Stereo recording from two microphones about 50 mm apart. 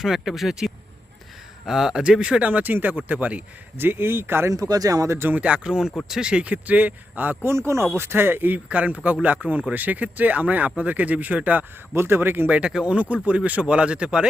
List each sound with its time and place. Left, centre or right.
0.0 s speech: centre
2.4 s speech: right
3.8 s speech: right
4.4 s speech: right
5.3 s speech: right
5.5 s speech: centre
6.4 s speech: right
7.4 s speech: right
7.9 s speech: right
11.9 s speech: right
12.5 s speech: right